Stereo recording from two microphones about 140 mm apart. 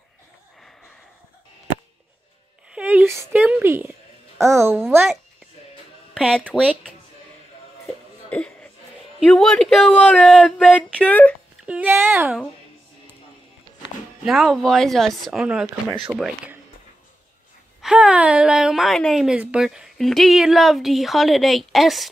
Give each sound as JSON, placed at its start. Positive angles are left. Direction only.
{"t": 2.7, "sound": "speech", "side_deg": -10}
{"t": 6.1, "sound": "speech", "side_deg": 5}
{"t": 6.6, "sound": "speech", "side_deg": -10}
{"t": 8.3, "sound": "a sound", "side_deg": 10}
{"t": 9.2, "sound": "speech", "side_deg": 0}
{"t": 10.4, "sound": "a sound", "side_deg": 10}
{"t": 11.6, "sound": "speech", "side_deg": -10}
{"t": 14.2, "sound": "speech", "side_deg": 0}
{"t": 15.4, "sound": "speech", "side_deg": -10}
{"t": 17.8, "sound": "speech", "side_deg": -10}